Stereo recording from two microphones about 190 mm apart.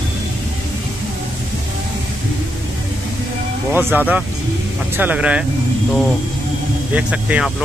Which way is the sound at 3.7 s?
10° right (ahead or behind).